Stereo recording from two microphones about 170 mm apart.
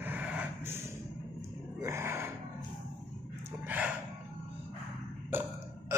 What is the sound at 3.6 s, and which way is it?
Gasp, 10° right (ahead or behind).